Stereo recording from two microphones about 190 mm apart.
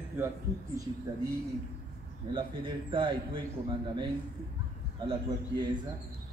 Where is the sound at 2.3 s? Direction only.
25° right (ahead or behind).